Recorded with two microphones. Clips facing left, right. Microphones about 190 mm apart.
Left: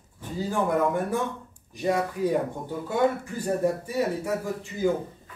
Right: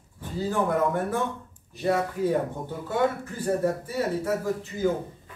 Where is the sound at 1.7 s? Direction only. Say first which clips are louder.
Even; 15° left (ahead or behind).